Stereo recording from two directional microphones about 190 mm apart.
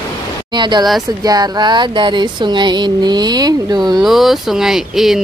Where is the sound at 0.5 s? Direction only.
25° right (ahead or behind).